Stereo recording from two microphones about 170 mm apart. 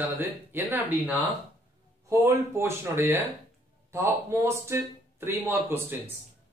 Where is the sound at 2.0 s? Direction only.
15° right (ahead or behind).